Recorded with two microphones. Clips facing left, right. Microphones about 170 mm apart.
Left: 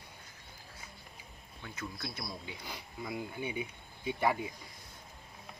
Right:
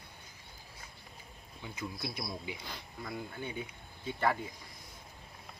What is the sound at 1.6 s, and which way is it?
Speech, 10° right (ahead or behind).